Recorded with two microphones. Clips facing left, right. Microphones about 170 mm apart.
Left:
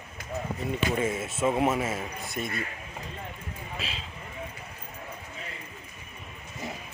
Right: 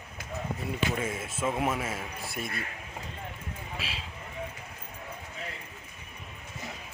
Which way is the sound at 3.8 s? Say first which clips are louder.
Left 2 dB; 5° right (ahead or behind).